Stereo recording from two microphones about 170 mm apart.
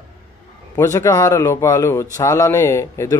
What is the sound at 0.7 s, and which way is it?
Speech, 20° left (ahead or behind).